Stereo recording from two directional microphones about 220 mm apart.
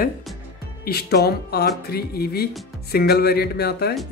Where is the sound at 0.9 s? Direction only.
45° left (ahead or behind).